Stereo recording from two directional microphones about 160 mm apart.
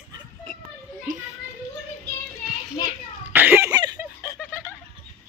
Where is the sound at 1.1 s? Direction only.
55° right (ahead or behind).